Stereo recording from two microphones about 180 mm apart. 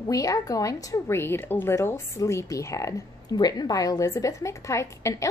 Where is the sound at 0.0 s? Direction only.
20° left (ahead or behind).